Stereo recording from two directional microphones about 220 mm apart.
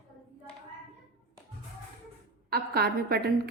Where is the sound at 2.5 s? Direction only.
45° right (ahead or behind).